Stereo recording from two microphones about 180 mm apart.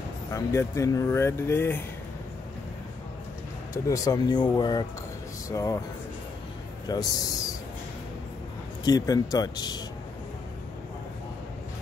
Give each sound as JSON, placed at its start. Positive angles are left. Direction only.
{"t": 0.3, "sound": "speech", "side_deg": 15}
{"t": 3.7, "sound": "speech", "side_deg": 20}
{"t": 6.9, "sound": "speech", "side_deg": 20}
{"t": 8.8, "sound": "speech", "side_deg": 20}